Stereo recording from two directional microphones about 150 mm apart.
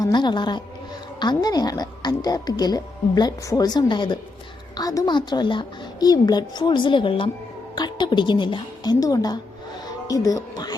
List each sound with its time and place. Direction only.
0.0 s speech: 30° left (ahead or behind)